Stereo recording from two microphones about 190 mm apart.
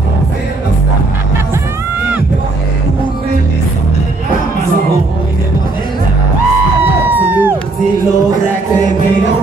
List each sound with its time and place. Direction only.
7.2 s music: 10° right (ahead or behind)